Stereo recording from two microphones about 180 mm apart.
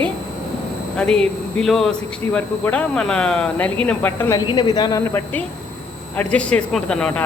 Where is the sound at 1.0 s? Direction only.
5° left (ahead or behind).